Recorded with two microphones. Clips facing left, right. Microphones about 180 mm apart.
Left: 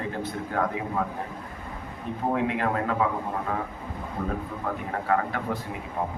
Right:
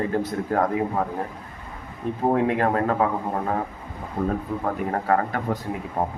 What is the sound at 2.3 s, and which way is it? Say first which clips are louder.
Speech: right 5 dB; 45° right (ahead or behind).